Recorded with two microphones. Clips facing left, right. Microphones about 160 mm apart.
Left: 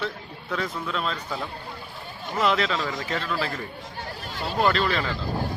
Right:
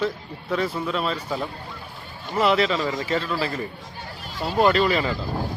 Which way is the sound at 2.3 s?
5° right (ahead or behind).